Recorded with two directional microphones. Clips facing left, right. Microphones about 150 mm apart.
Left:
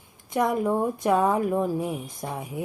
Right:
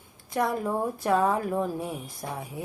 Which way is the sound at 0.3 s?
20° left (ahead or behind).